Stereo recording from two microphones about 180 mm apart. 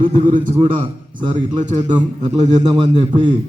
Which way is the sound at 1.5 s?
40° right (ahead or behind).